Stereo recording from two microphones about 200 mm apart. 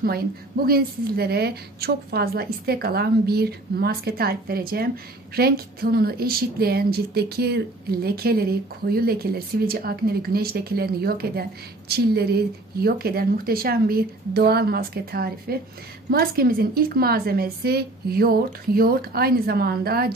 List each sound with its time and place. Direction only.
0.0 s a woman's voice: 50° right (ahead or behind)